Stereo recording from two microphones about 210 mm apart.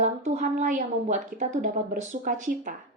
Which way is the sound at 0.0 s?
35° right (ahead or behind).